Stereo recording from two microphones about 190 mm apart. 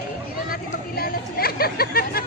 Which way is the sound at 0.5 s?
50° left (ahead or behind).